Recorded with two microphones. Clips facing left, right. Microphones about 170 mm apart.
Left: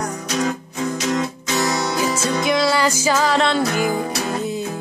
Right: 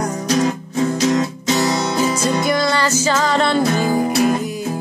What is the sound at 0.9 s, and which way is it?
Music, 35° right (ahead or behind).